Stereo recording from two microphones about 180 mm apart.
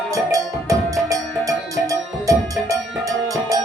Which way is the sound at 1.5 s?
20° right (ahead or behind).